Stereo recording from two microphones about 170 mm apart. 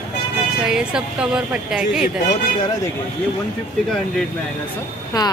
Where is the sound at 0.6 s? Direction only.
5° right (ahead or behind).